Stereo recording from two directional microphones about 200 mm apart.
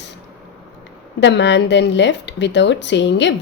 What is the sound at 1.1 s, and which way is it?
A woman's voice, 65° left (ahead or behind).